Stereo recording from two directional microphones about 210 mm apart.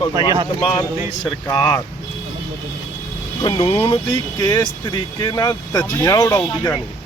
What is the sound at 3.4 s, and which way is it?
Speech, 25° left (ahead or behind).